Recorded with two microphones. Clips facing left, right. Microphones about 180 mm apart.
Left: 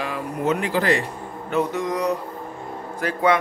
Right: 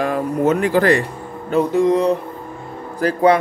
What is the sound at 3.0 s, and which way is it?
Speech, 35° right (ahead or behind).